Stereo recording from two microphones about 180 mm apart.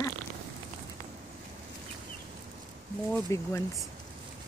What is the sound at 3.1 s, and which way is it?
Speech, 15° left (ahead or behind).